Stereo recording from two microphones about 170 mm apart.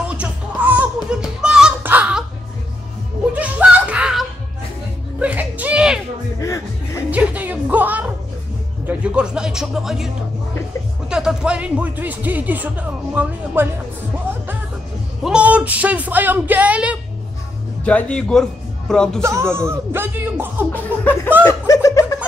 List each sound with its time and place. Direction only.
0.1 s music: 10° right (ahead or behind)
1.1 s a sound: 5° right (ahead or behind)
3.3 s a sound: 10° right (ahead or behind)
6.4 s music: 20° left (ahead or behind)
7.1 s music: 10° right (ahead or behind)
11.1 s speech: 5° right (ahead or behind)
15.2 s speech: 5° right (ahead or behind)
17.8 s a man's voice: 5° left (ahead or behind)
19.5 s speech: 15° right (ahead or behind)
20.7 s music: 10° left (ahead or behind)
21.5 s snicker: 20° left (ahead or behind)